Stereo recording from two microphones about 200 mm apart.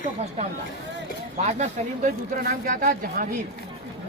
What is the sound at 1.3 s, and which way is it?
Speech, 35° right (ahead or behind).